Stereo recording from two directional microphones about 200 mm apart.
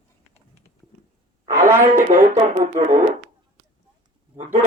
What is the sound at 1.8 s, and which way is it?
Speech, 40° right (ahead or behind).